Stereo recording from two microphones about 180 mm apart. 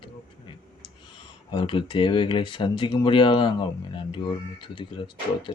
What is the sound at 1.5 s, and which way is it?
Speech, 25° left (ahead or behind).